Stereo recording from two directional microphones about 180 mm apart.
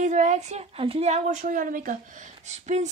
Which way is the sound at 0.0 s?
40° right (ahead or behind).